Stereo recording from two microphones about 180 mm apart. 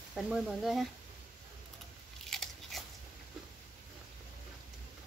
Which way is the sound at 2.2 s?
Centre (ahead or behind).